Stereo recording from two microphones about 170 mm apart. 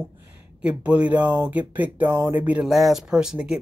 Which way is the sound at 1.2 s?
25° right (ahead or behind).